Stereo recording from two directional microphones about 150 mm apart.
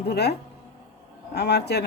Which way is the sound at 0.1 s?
90° left.